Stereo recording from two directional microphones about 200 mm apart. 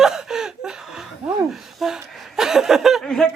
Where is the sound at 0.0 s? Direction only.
Centre (ahead or behind).